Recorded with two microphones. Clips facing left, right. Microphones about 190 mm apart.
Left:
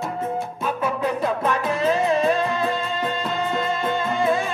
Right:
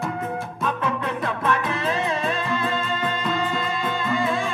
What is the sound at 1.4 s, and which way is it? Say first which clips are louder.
Music: left 1 dB; 15° left (ahead or behind).